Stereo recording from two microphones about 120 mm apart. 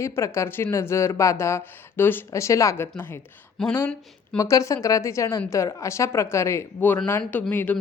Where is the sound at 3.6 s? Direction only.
5° left (ahead or behind).